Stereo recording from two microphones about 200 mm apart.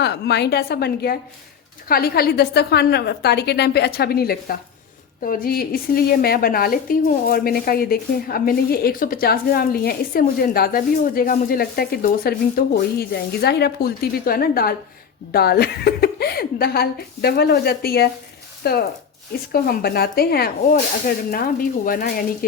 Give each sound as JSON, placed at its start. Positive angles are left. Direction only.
{"t": 0.0, "sound": "a woman's voice", "side_deg": 55}